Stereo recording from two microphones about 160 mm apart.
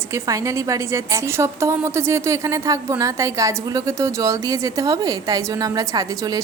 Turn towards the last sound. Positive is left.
turn(degrees=-20)  # may be behind; listen again after turning